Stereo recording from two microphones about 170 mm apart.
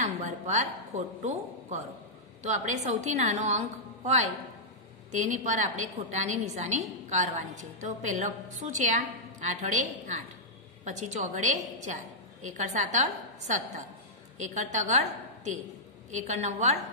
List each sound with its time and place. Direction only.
0.0 s a woman's voice: 45° right (ahead or behind)
16.1 s a woman's voice: 40° right (ahead or behind)